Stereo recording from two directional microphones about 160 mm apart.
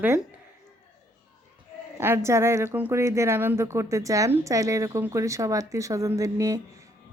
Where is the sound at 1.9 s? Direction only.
15° right (ahead or behind).